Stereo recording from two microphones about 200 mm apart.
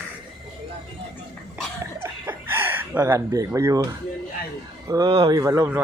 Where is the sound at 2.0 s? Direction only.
10° right (ahead or behind).